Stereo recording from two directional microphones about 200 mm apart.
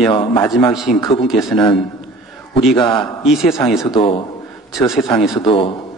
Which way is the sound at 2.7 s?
25° left (ahead or behind).